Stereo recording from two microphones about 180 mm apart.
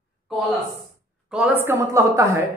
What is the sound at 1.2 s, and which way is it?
A woman's voice, 5° right (ahead or behind).